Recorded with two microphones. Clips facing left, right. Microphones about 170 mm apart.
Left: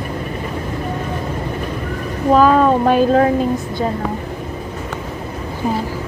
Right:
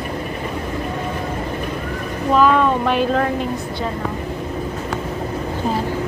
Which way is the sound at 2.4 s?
40° left (ahead or behind).